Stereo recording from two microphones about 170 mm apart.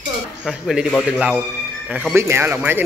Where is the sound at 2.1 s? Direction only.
15° right (ahead or behind).